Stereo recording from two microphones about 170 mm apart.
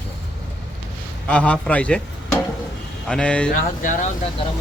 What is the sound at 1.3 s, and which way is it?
Speech, 5° left (ahead or behind).